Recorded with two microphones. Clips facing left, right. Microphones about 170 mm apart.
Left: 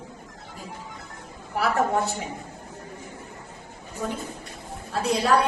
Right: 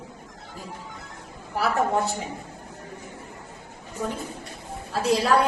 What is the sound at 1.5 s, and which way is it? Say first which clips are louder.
Speech: even; centre (ahead or behind).